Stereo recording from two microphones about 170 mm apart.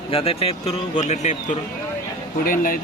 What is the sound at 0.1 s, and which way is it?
A man's voice, 35° left (ahead or behind).